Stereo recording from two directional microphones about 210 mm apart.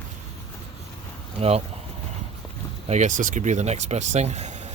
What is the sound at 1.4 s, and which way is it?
Speech, 30° right (ahead or behind).